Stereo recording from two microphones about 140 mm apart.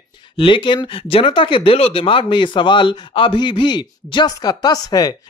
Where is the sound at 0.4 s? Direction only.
35° left (ahead or behind).